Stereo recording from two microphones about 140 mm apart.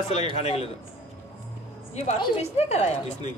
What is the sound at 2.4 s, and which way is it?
Speech, 50° left (ahead or behind).